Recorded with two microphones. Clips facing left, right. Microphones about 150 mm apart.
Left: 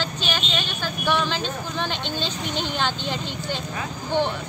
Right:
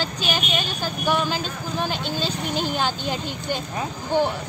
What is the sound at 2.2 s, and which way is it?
Speech, 40° right (ahead or behind).